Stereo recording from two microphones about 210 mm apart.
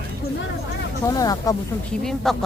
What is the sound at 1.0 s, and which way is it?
Speech, 15° left (ahead or behind).